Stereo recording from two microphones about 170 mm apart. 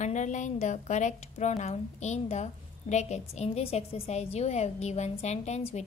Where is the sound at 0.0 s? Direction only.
45° left (ahead or behind).